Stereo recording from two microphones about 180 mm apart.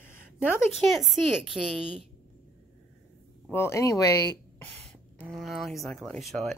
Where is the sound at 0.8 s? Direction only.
Centre (ahead or behind).